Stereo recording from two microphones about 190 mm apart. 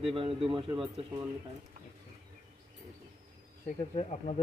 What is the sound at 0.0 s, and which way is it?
A man's voice, 30° right (ahead or behind).